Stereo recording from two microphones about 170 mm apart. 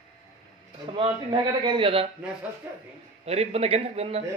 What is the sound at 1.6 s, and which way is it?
Speech, 30° right (ahead or behind).